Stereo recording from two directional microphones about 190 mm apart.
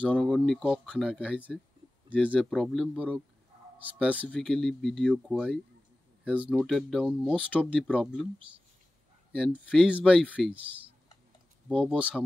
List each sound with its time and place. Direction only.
0.1 s speech: 5° left (ahead or behind)
4.3 s speech: 5° left (ahead or behind)
9.3 s speech: 5° right (ahead or behind)
11.8 s speech: 5° right (ahead or behind)